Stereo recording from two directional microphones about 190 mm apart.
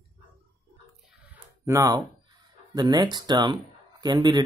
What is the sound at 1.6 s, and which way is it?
Speech, 15° right (ahead or behind).